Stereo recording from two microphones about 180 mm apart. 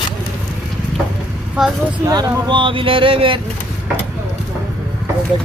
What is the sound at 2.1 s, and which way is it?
Speech, 25° right (ahead or behind).